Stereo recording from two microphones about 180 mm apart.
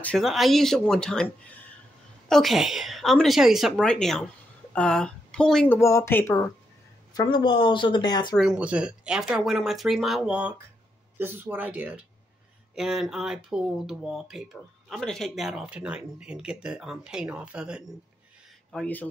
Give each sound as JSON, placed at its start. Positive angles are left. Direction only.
{"t": 0.0, "sound": "speech", "side_deg": 0}
{"t": 5.8, "sound": "speech", "side_deg": 15}
{"t": 7.2, "sound": "speech", "side_deg": 25}
{"t": 8.4, "sound": "speech", "side_deg": -5}
{"t": 18.7, "sound": "speech", "side_deg": 5}